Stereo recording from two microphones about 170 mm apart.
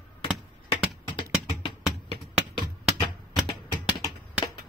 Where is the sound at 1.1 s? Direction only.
30° left (ahead or behind).